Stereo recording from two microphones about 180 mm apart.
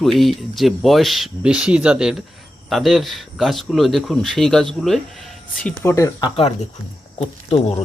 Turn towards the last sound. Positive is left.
turn(degrees=35)  # may be behind; listen again after turning